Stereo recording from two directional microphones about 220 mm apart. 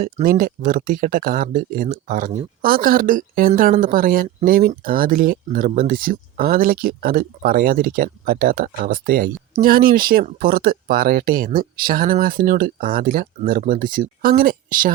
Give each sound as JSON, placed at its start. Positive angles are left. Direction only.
{"t": 0.0, "sound": "a woman's voice", "side_deg": -35}